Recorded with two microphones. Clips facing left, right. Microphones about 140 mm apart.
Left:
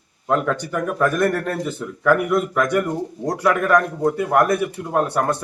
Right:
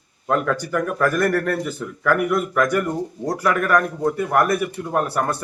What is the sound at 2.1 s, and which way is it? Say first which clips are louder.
Speech: left 2 dB; 15° left (ahead or behind).